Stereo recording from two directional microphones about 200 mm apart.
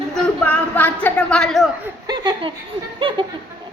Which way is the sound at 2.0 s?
20° right (ahead or behind).